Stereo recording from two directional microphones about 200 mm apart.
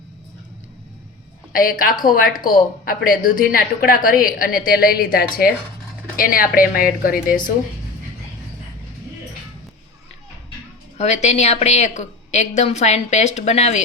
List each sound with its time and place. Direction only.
1.5 s a woman's voice: 45° left (ahead or behind)
10.9 s a woman's voice: 35° left (ahead or behind)